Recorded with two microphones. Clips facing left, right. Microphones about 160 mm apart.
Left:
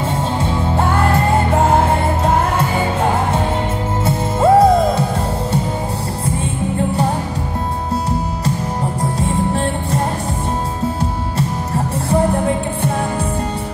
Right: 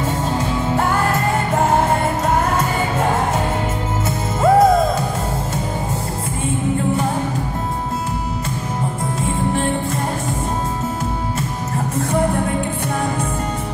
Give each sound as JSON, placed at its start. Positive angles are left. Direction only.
{"t": 4.0, "sound": "music", "side_deg": 30}